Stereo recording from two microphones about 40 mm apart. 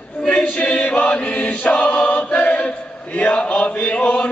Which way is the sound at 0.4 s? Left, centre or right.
Left.